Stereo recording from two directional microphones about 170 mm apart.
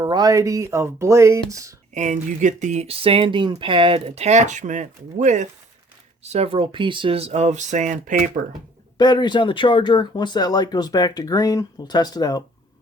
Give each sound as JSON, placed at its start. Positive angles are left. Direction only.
{"t": 0.0, "sound": "speech", "side_deg": -25}
{"t": 1.9, "sound": "speech", "side_deg": -45}
{"t": 9.0, "sound": "speech", "side_deg": 25}